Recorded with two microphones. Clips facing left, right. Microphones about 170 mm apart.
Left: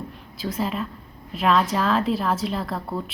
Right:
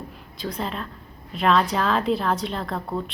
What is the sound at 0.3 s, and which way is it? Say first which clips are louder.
A woman's voice: left 3 dB; 5° left (ahead or behind).